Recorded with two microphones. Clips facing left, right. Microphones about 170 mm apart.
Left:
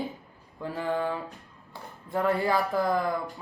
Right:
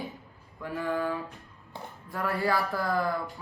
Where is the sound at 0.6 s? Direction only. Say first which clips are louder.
Left 1 dB; 25° left (ahead or behind).